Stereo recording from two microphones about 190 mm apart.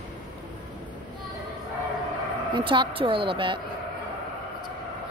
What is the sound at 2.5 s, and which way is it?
A woman's voice, 25° right (ahead or behind).